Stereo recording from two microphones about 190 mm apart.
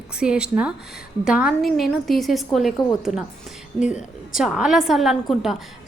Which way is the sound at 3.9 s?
5° right (ahead or behind).